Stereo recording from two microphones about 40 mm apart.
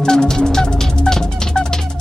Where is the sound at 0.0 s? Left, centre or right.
Centre.